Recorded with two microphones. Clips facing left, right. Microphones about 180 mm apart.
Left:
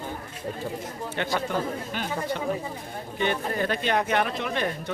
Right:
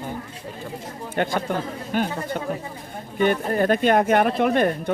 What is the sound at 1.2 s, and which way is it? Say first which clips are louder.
Speech: right 4 dB; 45° right (ahead or behind).